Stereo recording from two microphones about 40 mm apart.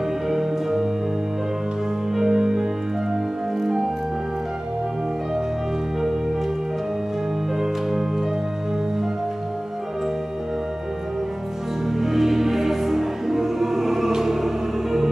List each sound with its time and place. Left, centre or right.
0.3 s music: centre
2.1 s music: centre
11.9 s music: centre